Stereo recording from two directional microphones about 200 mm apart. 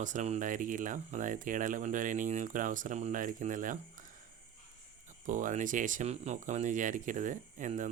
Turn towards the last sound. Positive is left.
turn(degrees=-40)  # may be behind; listen again after turning